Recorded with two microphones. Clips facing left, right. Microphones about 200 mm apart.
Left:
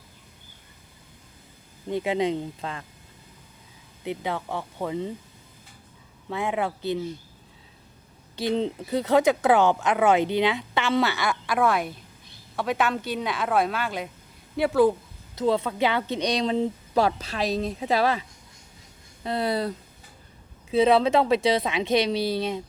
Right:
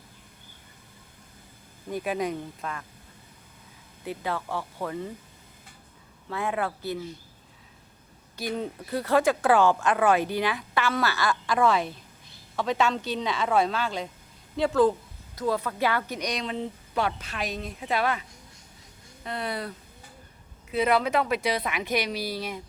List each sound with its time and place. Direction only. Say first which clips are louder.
1.9 s speech: left 4 dB; 25° left (ahead or behind)
4.0 s speech: left 2 dB; 20° left (ahead or behind)
6.3 s speech: left 2 dB; 20° left (ahead or behind)
8.4 s speech: left 6 dB; 25° left (ahead or behind)
11.4 s speech: even; 5° left (ahead or behind)
15.4 s speech: left 4 dB; 25° left (ahead or behind)